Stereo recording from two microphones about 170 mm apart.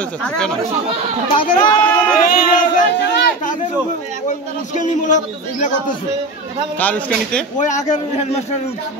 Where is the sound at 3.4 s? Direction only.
50° left (ahead or behind).